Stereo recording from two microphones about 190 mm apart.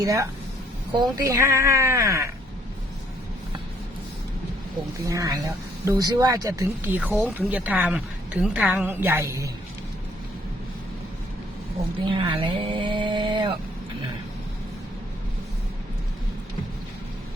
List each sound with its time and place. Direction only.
0.0 s speech: 15° right (ahead or behind)
5.0 s speech: 15° right (ahead or behind)
12.0 s speech: 25° right (ahead or behind)